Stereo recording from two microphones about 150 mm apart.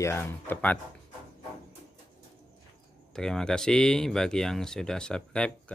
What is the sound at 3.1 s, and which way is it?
Speech, 5° left (ahead or behind).